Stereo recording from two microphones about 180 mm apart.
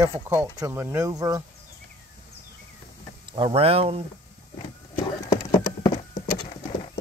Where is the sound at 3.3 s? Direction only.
30° right (ahead or behind).